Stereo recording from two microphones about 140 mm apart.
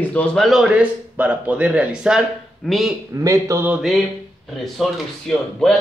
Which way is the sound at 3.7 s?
5° right (ahead or behind).